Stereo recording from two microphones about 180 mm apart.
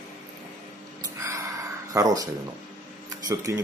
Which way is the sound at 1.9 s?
20° right (ahead or behind).